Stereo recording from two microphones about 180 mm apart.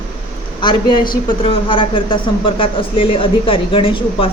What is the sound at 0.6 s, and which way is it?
A woman's voice, 25° left (ahead or behind).